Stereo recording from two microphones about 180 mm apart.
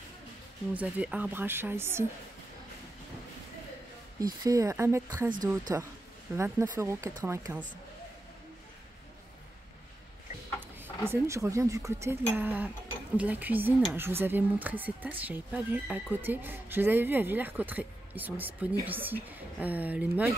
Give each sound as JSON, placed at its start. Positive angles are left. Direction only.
{"t": 0.7, "sound": "speech", "side_deg": -10}
{"t": 4.2, "sound": "speech", "side_deg": -20}
{"t": 10.8, "sound": "speech", "side_deg": -15}